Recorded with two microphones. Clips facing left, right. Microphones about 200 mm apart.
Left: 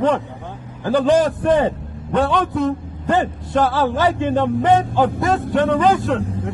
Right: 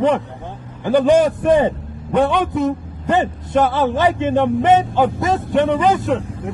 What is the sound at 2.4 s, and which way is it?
Speech, 20° right (ahead or behind).